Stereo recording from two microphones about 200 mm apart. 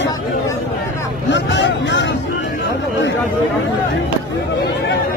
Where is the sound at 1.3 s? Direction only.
60° left (ahead or behind).